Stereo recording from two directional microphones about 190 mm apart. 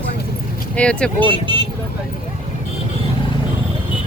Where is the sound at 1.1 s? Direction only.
25° right (ahead or behind).